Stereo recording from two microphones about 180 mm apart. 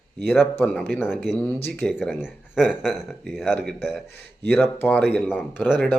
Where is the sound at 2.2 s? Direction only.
5° right (ahead or behind).